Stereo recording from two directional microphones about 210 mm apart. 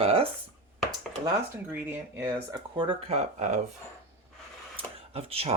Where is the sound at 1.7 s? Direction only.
10° right (ahead or behind); by 3.6 s 35° right (ahead or behind).